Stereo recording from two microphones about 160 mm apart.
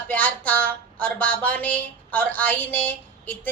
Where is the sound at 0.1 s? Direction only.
10° left (ahead or behind).